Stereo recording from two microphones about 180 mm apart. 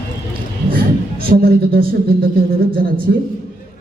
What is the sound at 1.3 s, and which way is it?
Speech, 55° right (ahead or behind).